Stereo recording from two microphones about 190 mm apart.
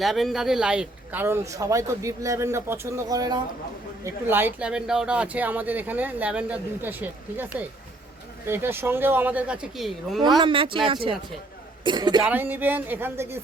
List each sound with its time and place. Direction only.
0.0 s speech: centre (ahead or behind)
10.4 s speech: 25° right (ahead or behind)
12.2 s speech: 10° right (ahead or behind)